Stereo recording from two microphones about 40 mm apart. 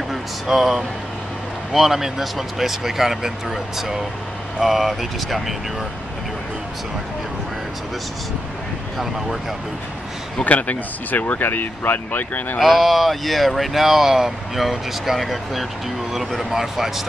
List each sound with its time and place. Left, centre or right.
0.1 s speech: centre
8.9 s speech: centre
10.4 s speech: left
11.4 s speech: left
12.5 s speech: centre